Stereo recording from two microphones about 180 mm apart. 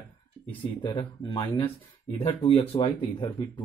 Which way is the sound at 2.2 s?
35° left (ahead or behind).